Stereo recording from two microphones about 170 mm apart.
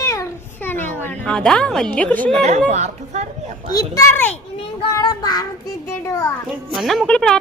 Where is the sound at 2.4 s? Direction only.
40° right (ahead or behind).